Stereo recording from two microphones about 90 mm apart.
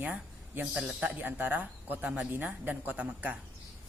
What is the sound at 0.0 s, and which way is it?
Speech, 15° right (ahead or behind).